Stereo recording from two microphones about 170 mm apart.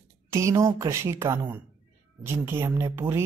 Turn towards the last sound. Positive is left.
turn(degrees=-15)  # may be behind; listen again after turning